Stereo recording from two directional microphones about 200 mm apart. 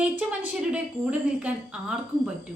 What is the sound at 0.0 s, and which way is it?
A woman's voice, 10° right (ahead or behind).